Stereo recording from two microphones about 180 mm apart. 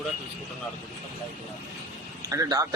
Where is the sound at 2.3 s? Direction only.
20° right (ahead or behind).